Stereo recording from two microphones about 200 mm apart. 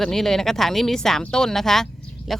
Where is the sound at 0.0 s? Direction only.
Centre (ahead or behind).